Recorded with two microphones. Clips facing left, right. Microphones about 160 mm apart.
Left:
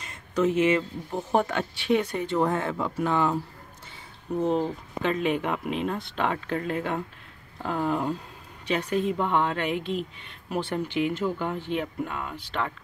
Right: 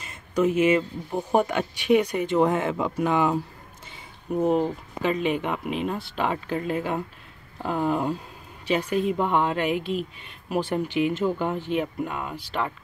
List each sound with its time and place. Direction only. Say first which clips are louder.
0.0 s speech: right 2 dB; 10° right (ahead or behind)